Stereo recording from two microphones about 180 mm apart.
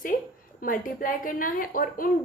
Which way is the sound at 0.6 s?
50° left (ahead or behind).